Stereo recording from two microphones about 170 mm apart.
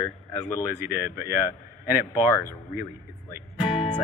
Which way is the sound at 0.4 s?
20° left (ahead or behind).